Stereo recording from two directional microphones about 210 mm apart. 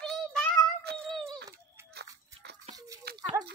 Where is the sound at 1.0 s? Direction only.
5° left (ahead or behind).